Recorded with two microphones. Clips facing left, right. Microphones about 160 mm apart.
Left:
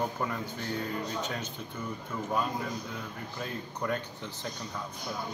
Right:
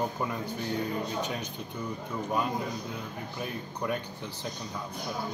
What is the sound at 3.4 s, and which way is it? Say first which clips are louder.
Speech: right 1 dB; 15° right (ahead or behind).